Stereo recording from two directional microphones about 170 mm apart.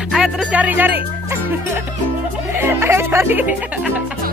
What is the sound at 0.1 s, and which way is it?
Speech, 5° right (ahead or behind).